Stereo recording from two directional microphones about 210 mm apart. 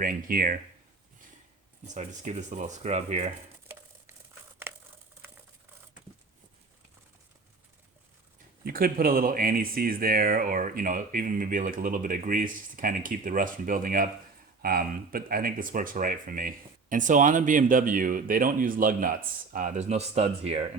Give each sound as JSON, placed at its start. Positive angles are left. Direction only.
{"t": 0.0, "sound": "speech", "side_deg": -40}
{"t": 1.9, "sound": "speech", "side_deg": -35}
{"t": 4.7, "sound": "crumpling", "side_deg": -10}
{"t": 8.6, "sound": "speech", "side_deg": -45}